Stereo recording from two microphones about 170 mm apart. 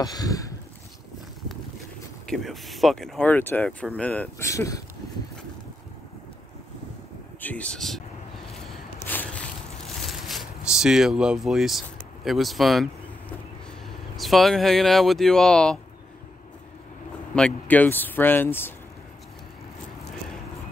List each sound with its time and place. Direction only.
0.0 s a sound: 20° left (ahead or behind)
2.2 s speech: centre (ahead or behind); by 4.8 s 20° left (ahead or behind)
7.3 s speech: 10° left (ahead or behind)
9.1 s a sound: 10° left (ahead or behind)
12.3 s speech: centre (ahead or behind)
14.1 s speech: centre (ahead or behind)
17.4 s speech: 10° left (ahead or behind)